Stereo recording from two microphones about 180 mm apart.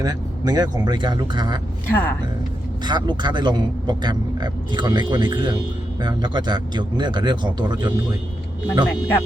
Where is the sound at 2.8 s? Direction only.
25° right (ahead or behind).